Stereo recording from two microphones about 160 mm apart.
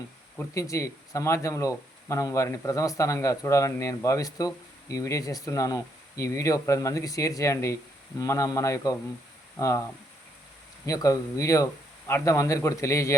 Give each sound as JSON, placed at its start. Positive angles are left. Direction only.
{"t": 0.3, "sound": "speech", "side_deg": 20}
{"t": 10.8, "sound": "speech", "side_deg": 20}